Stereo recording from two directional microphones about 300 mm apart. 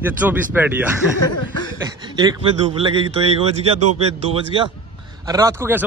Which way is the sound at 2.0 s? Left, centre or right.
Centre.